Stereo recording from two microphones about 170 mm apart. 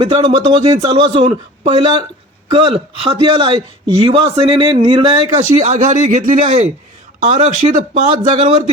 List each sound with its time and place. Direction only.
0.0 s a man's voice: 30° right (ahead or behind)
5.4 s speech: 45° right (ahead or behind)